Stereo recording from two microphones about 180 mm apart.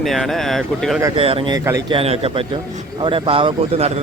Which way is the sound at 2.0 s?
30° right (ahead or behind).